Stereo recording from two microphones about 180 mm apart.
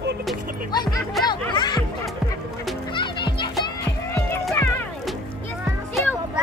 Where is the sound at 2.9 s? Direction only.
25° left (ahead or behind).